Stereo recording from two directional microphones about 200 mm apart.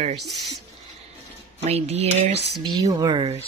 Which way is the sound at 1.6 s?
30° right (ahead or behind).